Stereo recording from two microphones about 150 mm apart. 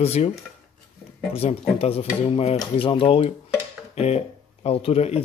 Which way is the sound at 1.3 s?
40° left (ahead or behind).